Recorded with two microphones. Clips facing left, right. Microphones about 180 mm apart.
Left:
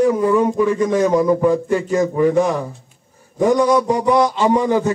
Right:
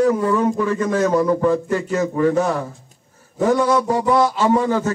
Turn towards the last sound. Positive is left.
turn(degrees=15)  # may be behind; listen again after turning